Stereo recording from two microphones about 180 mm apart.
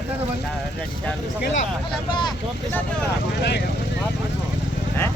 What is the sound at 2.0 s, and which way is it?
Speech, 25° left (ahead or behind).